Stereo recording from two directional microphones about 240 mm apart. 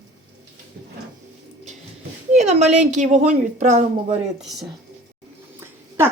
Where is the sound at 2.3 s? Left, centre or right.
Right.